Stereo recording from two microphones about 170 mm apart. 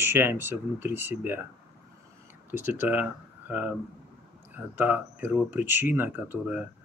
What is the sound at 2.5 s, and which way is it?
Speech, 10° right (ahead or behind).